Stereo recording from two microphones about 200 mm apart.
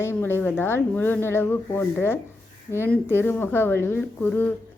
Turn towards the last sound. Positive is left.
turn(degrees=10)  # may be behind; listen again after turning